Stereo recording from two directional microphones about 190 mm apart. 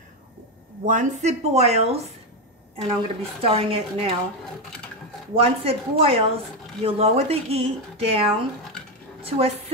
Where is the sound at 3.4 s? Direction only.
30° right (ahead or behind).